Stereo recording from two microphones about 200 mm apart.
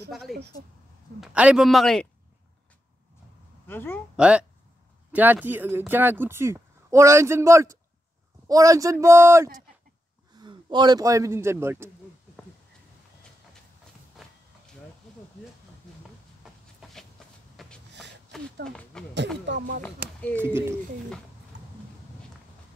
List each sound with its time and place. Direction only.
0.1 s a man's voice: centre (ahead or behind)
3.6 s a woman's voice: 10° left (ahead or behind)
4.2 s a man's voice: 5° right (ahead or behind)
14.2 s a sound: centre (ahead or behind)
16.8 s a sound: centre (ahead or behind)
17.2 s shuffle: centre (ahead or behind)
17.6 s a sound: centre (ahead or behind)
19.4 s speech: 60° right (ahead or behind)
20.3 s speech: 10° right (ahead or behind)